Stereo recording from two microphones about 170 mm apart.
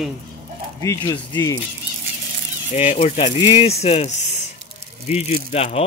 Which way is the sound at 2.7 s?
40° left (ahead or behind).